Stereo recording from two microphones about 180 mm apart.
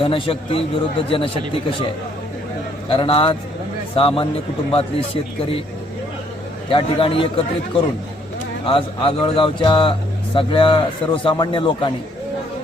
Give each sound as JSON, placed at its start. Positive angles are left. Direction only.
{"t": 0.0, "sound": "a man's voice", "side_deg": 30}
{"t": 2.9, "sound": "a man's voice", "side_deg": 30}
{"t": 6.7, "sound": "speech", "side_deg": 30}